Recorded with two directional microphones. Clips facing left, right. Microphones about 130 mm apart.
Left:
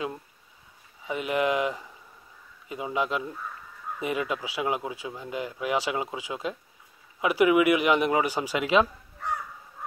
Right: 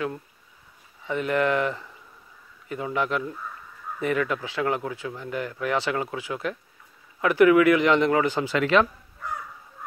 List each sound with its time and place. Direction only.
1.0 s speech: 15° left (ahead or behind)